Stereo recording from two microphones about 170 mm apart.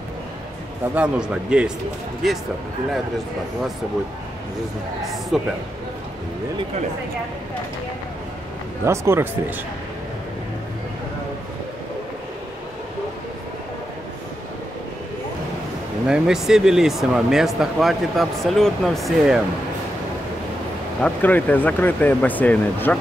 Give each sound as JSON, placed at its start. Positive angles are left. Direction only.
{"t": 0.9, "sound": "a man's voice", "side_deg": -5}
{"t": 5.0, "sound": "speech", "side_deg": 0}
{"t": 8.8, "sound": "a man's voice", "side_deg": -15}
{"t": 16.1, "sound": "speech", "side_deg": -5}
{"t": 21.0, "sound": "speech", "side_deg": 10}